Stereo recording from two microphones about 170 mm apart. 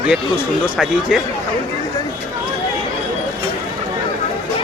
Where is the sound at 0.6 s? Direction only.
Centre (ahead or behind).